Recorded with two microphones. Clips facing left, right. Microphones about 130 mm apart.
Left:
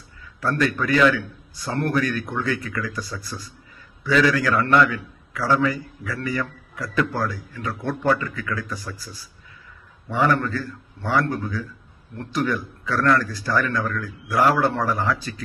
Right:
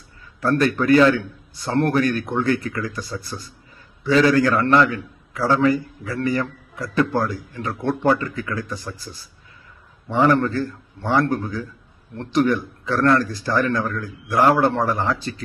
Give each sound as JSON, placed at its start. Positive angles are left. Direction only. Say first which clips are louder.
{"t": 0.6, "sound": "a man's voice", "louder": "right 4 dB", "side_deg": -30}